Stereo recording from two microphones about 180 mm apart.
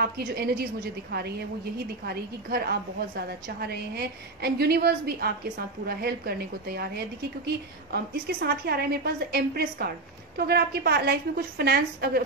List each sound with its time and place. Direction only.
0.3 s a woman's voice: 60° right (ahead or behind)